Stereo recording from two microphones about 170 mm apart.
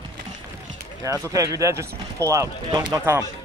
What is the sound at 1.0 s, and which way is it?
Speech, 20° right (ahead or behind).